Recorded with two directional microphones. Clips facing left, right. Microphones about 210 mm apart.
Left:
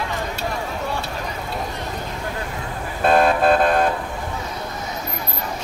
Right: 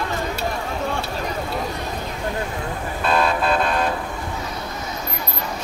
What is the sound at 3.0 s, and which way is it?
Vehicle, 50° left (ahead or behind).